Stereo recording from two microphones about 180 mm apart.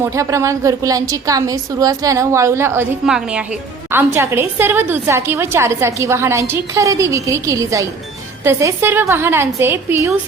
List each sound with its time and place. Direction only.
0.0 s a woman's voice: 15° right (ahead or behind)